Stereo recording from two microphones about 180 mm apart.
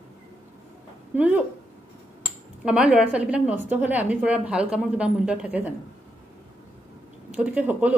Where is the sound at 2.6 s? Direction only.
5° right (ahead or behind).